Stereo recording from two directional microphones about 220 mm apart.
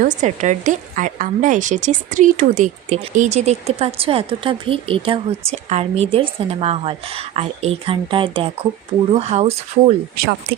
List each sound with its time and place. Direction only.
0.0 s a woman's voice: 35° right (ahead or behind)